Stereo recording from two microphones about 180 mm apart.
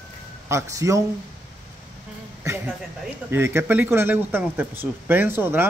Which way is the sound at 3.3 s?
15° right (ahead or behind).